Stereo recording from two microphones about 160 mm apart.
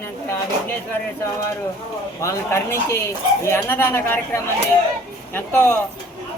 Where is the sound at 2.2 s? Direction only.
15° left (ahead or behind).